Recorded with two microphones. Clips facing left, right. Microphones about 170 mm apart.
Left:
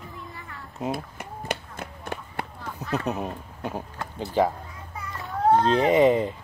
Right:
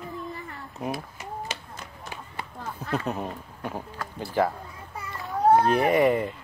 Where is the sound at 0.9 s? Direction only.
55° left (ahead or behind).